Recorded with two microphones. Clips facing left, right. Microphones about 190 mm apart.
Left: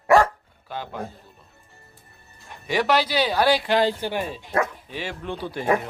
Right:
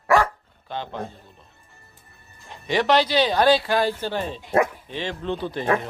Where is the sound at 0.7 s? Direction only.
10° left (ahead or behind).